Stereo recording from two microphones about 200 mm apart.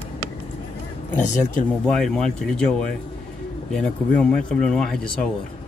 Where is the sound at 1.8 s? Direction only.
5° left (ahead or behind).